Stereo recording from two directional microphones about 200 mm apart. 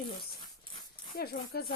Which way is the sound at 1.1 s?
50° left (ahead or behind).